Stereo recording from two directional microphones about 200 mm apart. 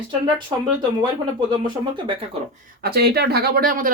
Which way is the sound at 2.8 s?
55° right (ahead or behind).